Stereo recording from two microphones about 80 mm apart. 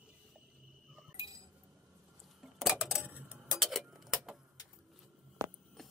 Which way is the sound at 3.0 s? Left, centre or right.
Centre.